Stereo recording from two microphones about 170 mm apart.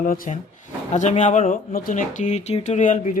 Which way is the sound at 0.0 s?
55° left (ahead or behind).